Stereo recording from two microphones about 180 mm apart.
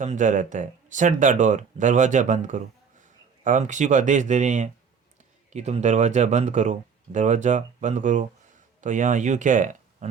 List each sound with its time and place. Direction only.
0.0 s speech: 45° right (ahead or behind)